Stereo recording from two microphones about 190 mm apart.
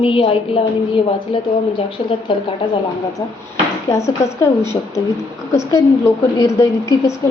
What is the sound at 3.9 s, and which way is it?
Speech, 15° left (ahead or behind).